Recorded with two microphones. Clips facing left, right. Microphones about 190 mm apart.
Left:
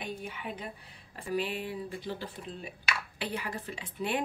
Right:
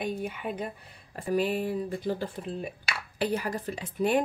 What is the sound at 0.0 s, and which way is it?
Speech, 50° right (ahead or behind).